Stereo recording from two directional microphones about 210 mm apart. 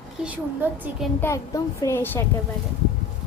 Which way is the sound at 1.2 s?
15° left (ahead or behind).